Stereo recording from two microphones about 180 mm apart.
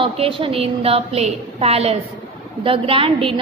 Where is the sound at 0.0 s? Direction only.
30° right (ahead or behind).